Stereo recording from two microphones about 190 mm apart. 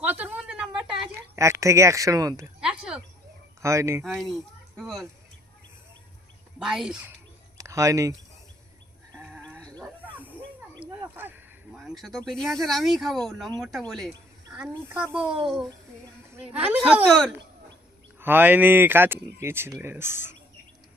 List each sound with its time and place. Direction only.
0.0 s a sound: 5° right (ahead or behind)
1.1 s speech: 15° right (ahead or behind)
2.6 s a sound: 5° right (ahead or behind)
3.6 s speech: 15° right (ahead or behind)
4.0 s speech: centre (ahead or behind)
6.6 s speech: 5° right (ahead or behind)
7.6 s speech: 15° right (ahead or behind)
9.1 s livestock: centre (ahead or behind)
10.0 s snake: 10° right (ahead or behind)
11.0 s a sound: 10° right (ahead or behind)
11.8 s speech: centre (ahead or behind)
15.1 s speech: 5° right (ahead or behind)
18.2 s speech: 10° right (ahead or behind)